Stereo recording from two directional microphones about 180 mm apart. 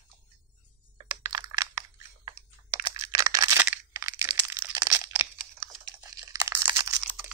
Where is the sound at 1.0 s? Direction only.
20° right (ahead or behind).